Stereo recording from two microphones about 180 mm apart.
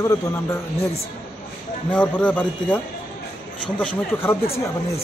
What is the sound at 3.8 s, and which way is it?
Speech, 10° left (ahead or behind).